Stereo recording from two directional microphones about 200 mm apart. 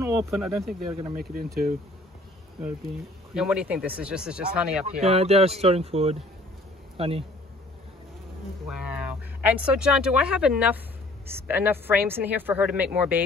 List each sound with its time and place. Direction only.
0.0 s insect: 15° right (ahead or behind)
0.6 s speech: centre (ahead or behind)
1.1 s speech: 45° right (ahead or behind)
3.3 s speech: 5° right (ahead or behind)
5.0 s speech: 30° right (ahead or behind)
9.5 s speech: 5° right (ahead or behind)